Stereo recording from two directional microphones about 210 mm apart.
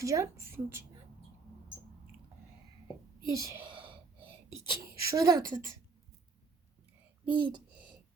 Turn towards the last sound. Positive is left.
turn(degrees=-20)  # may be behind; listen again after turning